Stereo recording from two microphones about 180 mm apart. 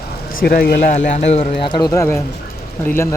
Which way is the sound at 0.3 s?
55° left (ahead or behind).